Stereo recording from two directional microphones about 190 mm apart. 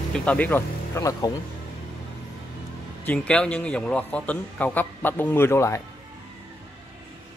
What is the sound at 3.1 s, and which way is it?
A man's voice, 5° left (ahead or behind).